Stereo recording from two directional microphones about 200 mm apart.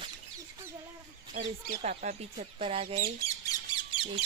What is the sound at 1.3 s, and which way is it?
Speech, 40° right (ahead or behind).